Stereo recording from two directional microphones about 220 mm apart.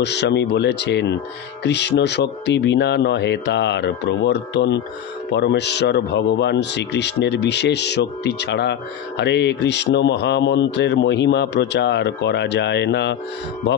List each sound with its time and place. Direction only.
0.0 s speech: 50° left (ahead or behind)